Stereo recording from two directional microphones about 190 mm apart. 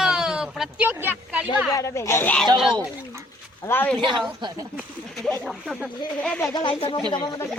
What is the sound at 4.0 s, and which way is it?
Speech, 25° right (ahead or behind).